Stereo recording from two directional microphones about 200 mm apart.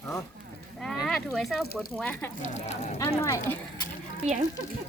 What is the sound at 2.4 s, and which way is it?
Speech, 35° left (ahead or behind).